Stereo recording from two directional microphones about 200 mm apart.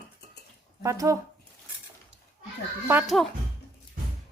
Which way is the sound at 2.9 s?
5° right (ahead or behind).